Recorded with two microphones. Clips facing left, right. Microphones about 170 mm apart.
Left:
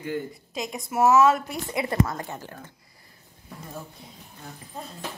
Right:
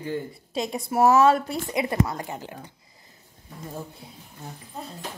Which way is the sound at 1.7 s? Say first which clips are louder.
Even; 20° right (ahead or behind).